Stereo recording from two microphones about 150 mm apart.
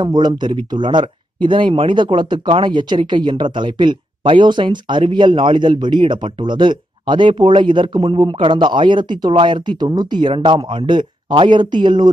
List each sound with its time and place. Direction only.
0.0 s speech: 30° right (ahead or behind)